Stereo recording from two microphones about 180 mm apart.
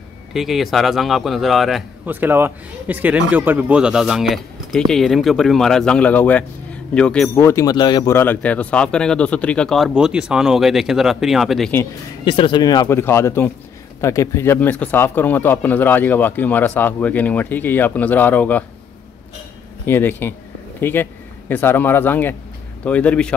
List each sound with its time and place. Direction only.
0.3 s speech: centre (ahead or behind)
2.0 s speech: 10° right (ahead or behind)
12.3 s speech: 25° left (ahead or behind); by 18.6 s 10° left (ahead or behind)
19.9 s speech: 10° left (ahead or behind)